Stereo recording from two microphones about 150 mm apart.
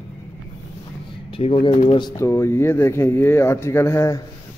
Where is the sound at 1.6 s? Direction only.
35° left (ahead or behind); by 4.2 s 20° left (ahead or behind).